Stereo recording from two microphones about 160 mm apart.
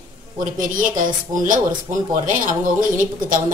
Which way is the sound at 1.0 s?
55° right (ahead or behind).